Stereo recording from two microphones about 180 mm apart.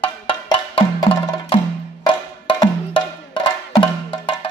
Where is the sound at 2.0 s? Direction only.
25° left (ahead or behind).